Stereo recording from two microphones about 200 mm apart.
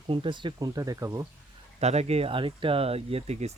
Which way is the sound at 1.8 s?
30° right (ahead or behind).